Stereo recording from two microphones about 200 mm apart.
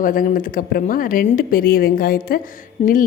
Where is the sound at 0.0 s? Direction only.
45° left (ahead or behind).